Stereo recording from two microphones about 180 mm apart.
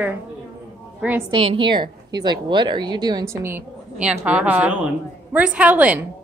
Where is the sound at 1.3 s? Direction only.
30° right (ahead or behind); by 6.1 s 10° right (ahead or behind).